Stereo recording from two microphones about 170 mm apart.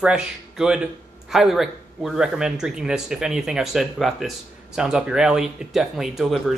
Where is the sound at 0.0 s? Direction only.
5° right (ahead or behind).